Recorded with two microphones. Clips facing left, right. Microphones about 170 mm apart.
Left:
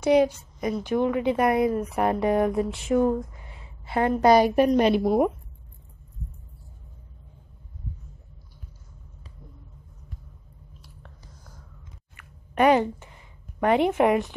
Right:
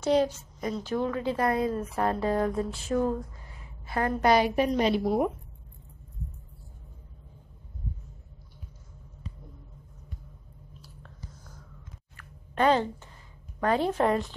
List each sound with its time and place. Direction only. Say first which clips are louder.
0.0 s a woman's voice: left 5 dB; 10° left (ahead or behind)
4.3 s a woman's voice: left 5 dB; 50° left (ahead or behind)
12.2 s a sound: left 4 dB; 15° left (ahead or behind)